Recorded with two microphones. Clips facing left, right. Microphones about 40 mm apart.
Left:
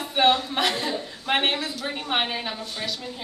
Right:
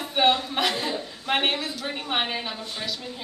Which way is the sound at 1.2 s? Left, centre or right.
Centre.